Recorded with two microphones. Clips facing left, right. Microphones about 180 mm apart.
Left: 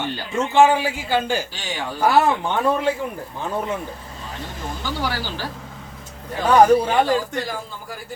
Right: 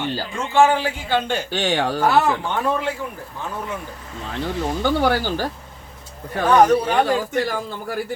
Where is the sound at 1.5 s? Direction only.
65° right (ahead or behind).